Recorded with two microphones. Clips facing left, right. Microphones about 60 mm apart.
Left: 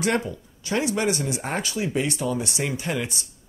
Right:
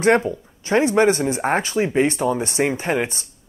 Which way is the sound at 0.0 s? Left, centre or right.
Right.